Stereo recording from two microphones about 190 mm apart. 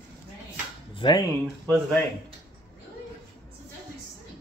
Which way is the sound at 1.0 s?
25° left (ahead or behind).